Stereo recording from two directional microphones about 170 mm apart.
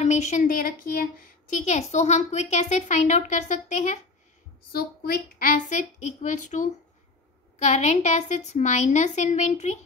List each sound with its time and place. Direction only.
0.0 s a sound: 40° left (ahead or behind)
0.4 s speech: 55° left (ahead or behind)
1.5 s speech: 40° left (ahead or behind)
4.7 s speech: 65° left (ahead or behind); by 9.8 s 45° left (ahead or behind)